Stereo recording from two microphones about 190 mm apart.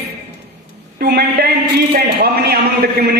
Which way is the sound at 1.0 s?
55° right (ahead or behind).